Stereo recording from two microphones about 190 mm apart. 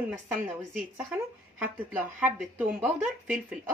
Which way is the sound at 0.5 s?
5° right (ahead or behind).